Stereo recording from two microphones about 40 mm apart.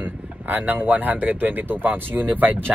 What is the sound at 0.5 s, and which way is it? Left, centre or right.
Speech, right.